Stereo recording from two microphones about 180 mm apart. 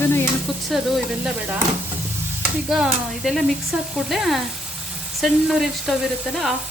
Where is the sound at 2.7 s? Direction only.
5° right (ahead or behind).